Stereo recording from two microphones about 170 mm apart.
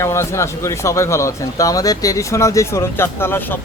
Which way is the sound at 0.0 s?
15° left (ahead or behind).